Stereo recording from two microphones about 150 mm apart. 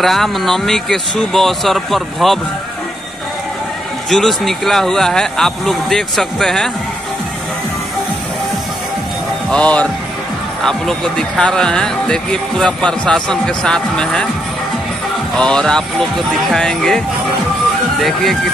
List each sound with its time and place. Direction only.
0.0 s speech: centre (ahead or behind)
4.1 s speech: centre (ahead or behind)
9.5 s speech: 10° left (ahead or behind)
15.3 s speech: 5° left (ahead or behind)
18.0 s speech: centre (ahead or behind)